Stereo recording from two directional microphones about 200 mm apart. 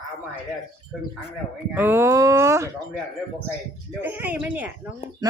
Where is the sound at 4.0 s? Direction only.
10° right (ahead or behind).